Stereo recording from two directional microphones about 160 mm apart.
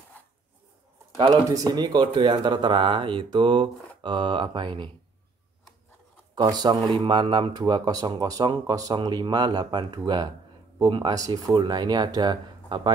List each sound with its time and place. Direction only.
1.3 s speech: 20° right (ahead or behind)
6.3 s speech: 25° right (ahead or behind)